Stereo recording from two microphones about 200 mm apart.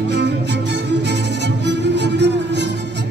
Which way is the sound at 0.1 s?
60° right (ahead or behind).